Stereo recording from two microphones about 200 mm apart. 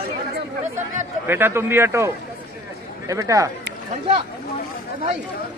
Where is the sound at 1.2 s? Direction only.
10° right (ahead or behind).